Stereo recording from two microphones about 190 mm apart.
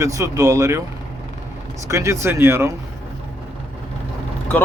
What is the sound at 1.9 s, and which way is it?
Speech, 15° right (ahead or behind).